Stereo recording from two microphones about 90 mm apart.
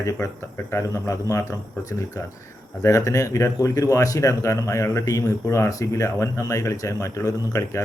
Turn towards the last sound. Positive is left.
turn(degrees=35)  # may be behind; listen again after turning